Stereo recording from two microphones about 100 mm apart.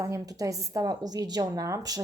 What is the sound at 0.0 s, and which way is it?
Speech, 30° right (ahead or behind).